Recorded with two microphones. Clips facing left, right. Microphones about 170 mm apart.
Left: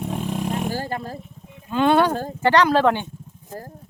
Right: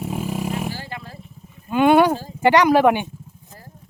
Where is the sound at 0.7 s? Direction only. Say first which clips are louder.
Left 5 dB; 45° left (ahead or behind).